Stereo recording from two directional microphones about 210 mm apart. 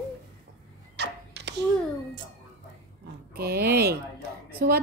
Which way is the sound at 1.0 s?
55° right (ahead or behind).